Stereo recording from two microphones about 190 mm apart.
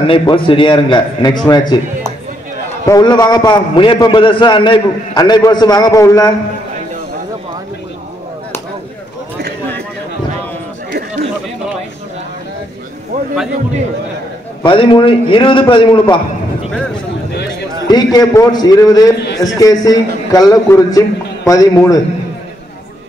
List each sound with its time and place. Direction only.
0.0 s a man's voice: 25° left (ahead or behind)
2.9 s a man's voice: 20° left (ahead or behind)
14.6 s a man's voice: 25° left (ahead or behind)
17.8 s a man's voice: 20° left (ahead or behind)